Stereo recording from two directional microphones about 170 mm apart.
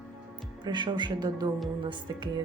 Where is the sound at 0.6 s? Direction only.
25° right (ahead or behind).